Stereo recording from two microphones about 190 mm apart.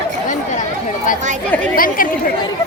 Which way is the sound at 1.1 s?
45° left (ahead or behind).